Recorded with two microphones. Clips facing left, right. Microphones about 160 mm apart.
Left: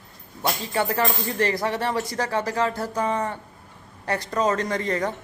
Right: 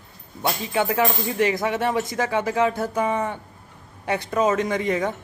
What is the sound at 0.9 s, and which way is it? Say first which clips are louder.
A woman's voice: right 2 dB; 5° right (ahead or behind).